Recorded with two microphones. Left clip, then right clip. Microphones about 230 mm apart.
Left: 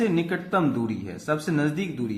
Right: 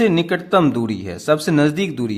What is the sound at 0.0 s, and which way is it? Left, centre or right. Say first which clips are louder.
Speech: right 8 dB; right.